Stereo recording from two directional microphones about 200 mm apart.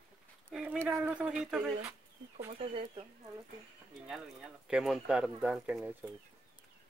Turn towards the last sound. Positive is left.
turn(degrees=-5)  # may be behind; listen again after turning